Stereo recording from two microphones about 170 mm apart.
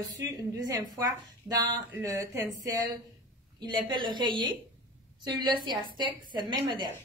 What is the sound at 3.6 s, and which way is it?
A woman's voice, 30° right (ahead or behind).